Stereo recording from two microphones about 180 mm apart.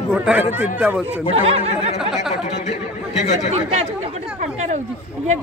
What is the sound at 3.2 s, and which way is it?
Speech, 40° left (ahead or behind).